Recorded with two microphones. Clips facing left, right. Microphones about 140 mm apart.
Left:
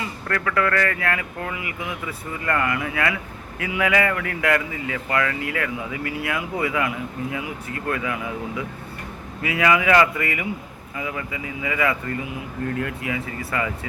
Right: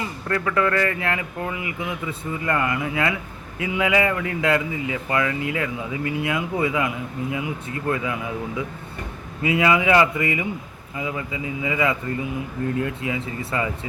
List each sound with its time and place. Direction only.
0.0 s speech: 20° right (ahead or behind)